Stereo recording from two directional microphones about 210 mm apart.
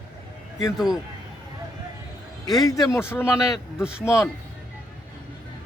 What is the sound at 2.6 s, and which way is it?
Speech, 15° left (ahead or behind).